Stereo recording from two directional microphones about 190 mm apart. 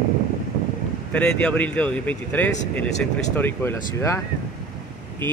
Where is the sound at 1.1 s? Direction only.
5° left (ahead or behind).